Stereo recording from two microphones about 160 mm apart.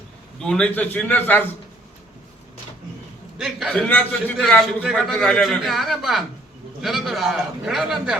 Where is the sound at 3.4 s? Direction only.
Centre (ahead or behind).